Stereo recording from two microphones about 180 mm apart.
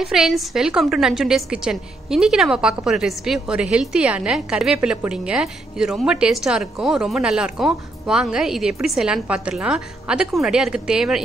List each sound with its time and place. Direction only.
0.0 s a woman's voice: centre (ahead or behind)